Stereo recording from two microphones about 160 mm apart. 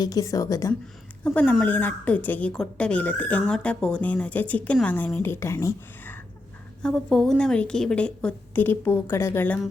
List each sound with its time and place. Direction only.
0.0 s speech: 20° left (ahead or behind)
1.2 s a woman's voice: 10° left (ahead or behind)
6.8 s a woman's voice: centre (ahead or behind)